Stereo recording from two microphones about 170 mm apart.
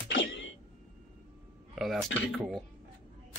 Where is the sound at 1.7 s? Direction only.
Centre (ahead or behind).